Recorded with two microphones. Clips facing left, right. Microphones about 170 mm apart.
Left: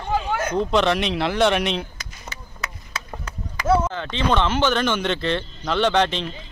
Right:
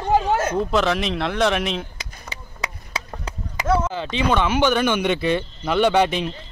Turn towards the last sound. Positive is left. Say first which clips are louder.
# right 2 dB
turn(degrees=-10)  # may be behind; listen again after turning